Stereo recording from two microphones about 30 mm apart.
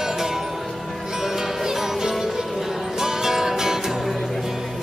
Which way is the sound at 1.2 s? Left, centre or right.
Centre.